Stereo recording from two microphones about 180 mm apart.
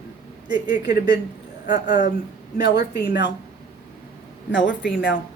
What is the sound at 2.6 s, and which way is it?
Speech, 65° left (ahead or behind).